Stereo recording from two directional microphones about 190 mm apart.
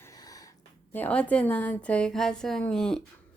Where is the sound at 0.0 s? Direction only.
20° left (ahead or behind).